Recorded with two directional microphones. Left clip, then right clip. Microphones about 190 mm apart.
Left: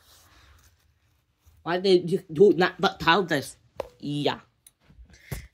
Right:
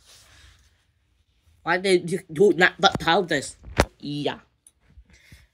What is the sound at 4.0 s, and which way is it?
Speech, centre (ahead or behind).